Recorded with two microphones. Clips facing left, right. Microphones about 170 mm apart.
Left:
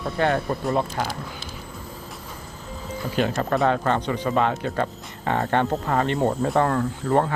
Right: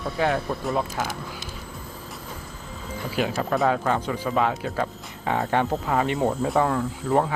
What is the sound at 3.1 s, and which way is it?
Speech, 5° right (ahead or behind).